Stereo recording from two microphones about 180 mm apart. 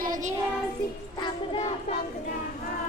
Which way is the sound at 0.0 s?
45° right (ahead or behind).